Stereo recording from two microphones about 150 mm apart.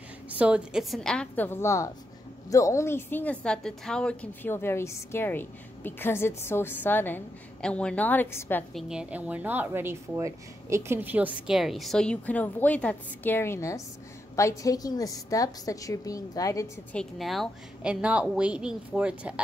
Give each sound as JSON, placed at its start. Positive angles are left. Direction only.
{"t": 0.3, "sound": "a woman's voice", "side_deg": -10}
{"t": 8.7, "sound": "a woman's voice", "side_deg": -5}
{"t": 16.9, "sound": "a woman's voice", "side_deg": 0}